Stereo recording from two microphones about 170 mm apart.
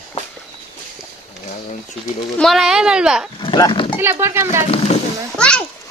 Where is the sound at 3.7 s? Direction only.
30° left (ahead or behind).